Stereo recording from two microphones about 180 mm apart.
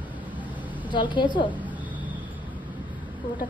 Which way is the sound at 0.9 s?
25° left (ahead or behind).